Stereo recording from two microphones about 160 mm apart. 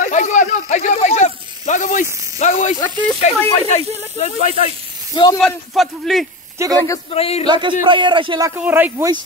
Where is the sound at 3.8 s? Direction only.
40° right (ahead or behind).